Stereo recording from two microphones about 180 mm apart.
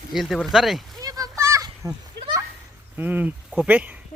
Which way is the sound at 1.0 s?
20° right (ahead or behind).